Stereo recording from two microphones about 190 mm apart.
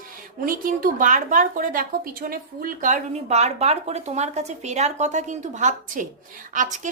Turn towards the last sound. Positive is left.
turn(degrees=-45)  # may be behind; listen again after turning